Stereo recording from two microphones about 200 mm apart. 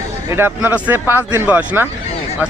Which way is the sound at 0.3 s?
10° right (ahead or behind).